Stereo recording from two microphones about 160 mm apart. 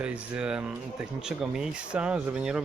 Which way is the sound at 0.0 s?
5° right (ahead or behind).